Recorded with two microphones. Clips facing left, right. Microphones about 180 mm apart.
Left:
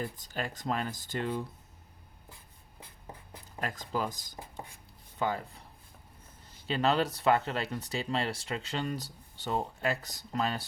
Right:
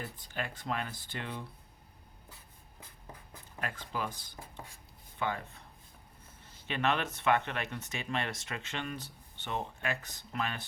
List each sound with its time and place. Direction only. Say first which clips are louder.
0.2 s speech: left 3 dB; 40° left (ahead or behind)
3.6 s speech: left 4 dB; 40° left (ahead or behind)
6.7 s speech: left 4 dB; 35° left (ahead or behind)